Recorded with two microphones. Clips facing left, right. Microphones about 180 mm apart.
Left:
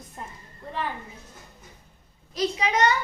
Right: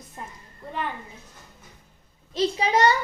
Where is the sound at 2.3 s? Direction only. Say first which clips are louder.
Right 2 dB; 30° right (ahead or behind).